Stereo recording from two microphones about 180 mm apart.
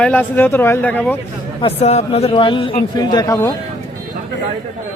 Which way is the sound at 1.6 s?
35° left (ahead or behind).